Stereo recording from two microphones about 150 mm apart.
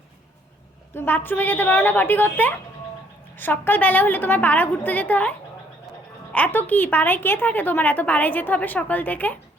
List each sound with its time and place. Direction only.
0.9 s a woman's voice: 15° left (ahead or behind)
6.3 s a woman's voice: 10° left (ahead or behind)